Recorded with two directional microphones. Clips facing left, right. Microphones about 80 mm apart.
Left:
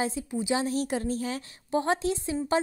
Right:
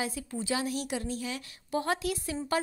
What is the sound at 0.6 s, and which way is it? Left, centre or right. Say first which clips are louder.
A woman's voice: left 4 dB; left.